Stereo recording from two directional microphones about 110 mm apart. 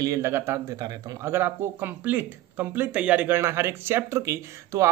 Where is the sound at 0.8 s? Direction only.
35° right (ahead or behind).